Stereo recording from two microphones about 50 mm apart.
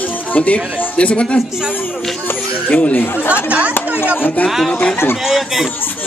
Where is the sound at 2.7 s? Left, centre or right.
Left.